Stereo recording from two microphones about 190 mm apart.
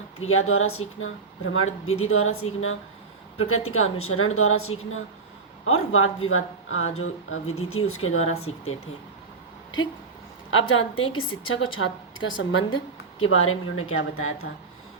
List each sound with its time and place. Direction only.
0.2 s speech: 90° left
10.5 s speech: 90° left